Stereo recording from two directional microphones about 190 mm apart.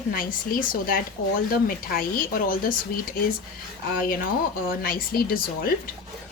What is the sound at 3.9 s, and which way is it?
A woman's voice, 50° left (ahead or behind).